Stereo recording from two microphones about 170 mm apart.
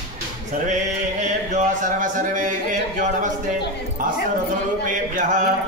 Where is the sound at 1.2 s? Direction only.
50° right (ahead or behind).